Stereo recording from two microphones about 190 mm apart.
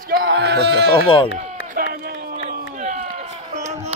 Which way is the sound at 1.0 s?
30° left (ahead or behind).